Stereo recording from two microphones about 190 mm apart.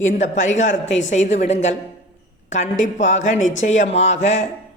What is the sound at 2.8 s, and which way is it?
A man's voice, 40° left (ahead or behind).